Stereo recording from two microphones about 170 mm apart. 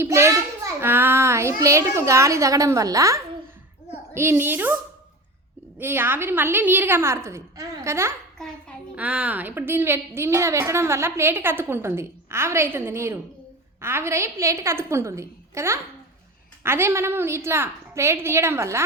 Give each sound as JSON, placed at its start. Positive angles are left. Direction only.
{"t": 0.0, "sound": "a child's voice", "side_deg": -15}
{"t": 5.8, "sound": "a woman's voice", "side_deg": -15}